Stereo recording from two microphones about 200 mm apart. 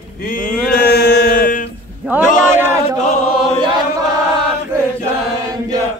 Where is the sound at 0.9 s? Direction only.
45° left (ahead or behind).